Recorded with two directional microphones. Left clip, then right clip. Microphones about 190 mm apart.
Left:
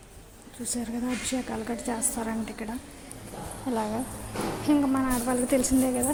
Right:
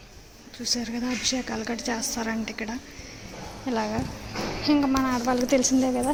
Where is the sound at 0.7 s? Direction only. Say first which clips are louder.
Right 3 dB; centre (ahead or behind).